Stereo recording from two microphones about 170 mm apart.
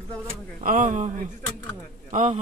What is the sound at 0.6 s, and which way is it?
Speech, 50° right (ahead or behind).